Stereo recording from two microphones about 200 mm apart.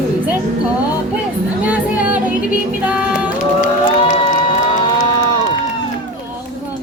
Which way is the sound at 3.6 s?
40° left (ahead or behind).